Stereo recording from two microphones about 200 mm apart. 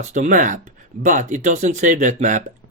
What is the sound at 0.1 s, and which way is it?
Speech, 40° right (ahead or behind).